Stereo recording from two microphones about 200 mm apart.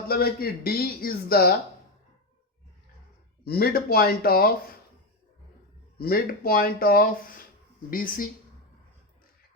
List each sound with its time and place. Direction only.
0.1 s speech: 50° left (ahead or behind)
3.4 s speech: 50° left (ahead or behind)
6.0 s speech: 50° left (ahead or behind)